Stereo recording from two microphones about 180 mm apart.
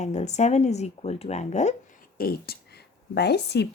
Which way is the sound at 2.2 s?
55° left (ahead or behind).